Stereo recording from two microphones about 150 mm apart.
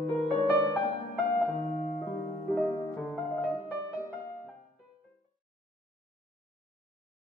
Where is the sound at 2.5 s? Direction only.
5° right (ahead or behind).